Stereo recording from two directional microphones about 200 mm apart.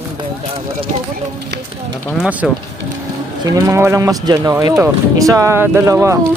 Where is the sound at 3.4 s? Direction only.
15° right (ahead or behind).